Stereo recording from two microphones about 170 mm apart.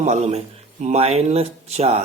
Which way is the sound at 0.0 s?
40° right (ahead or behind).